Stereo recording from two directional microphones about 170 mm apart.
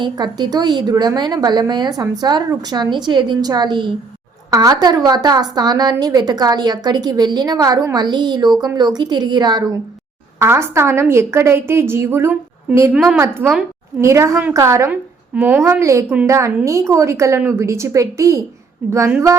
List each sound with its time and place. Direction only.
0.0 s a woman's voice: 25° right (ahead or behind)